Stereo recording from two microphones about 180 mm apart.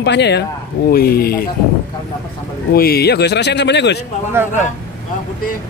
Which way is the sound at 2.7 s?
60° left (ahead or behind).